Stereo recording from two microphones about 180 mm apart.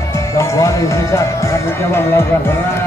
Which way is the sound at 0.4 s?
15° left (ahead or behind).